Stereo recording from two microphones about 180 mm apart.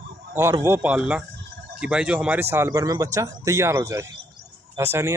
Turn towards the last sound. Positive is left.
turn(degrees=-15)  # may be behind; listen again after turning